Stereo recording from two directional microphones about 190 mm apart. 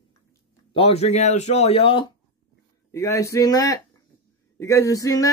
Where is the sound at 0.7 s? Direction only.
30° left (ahead or behind).